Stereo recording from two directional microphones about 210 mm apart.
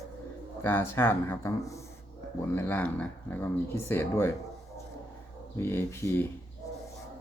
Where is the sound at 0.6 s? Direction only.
10° left (ahead or behind).